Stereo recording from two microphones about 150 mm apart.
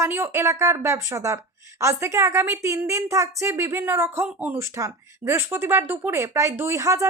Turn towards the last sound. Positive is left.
turn(degrees=-20)  # may be behind; listen again after turning